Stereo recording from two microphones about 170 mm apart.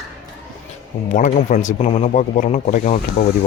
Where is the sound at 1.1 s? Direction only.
50° left (ahead or behind).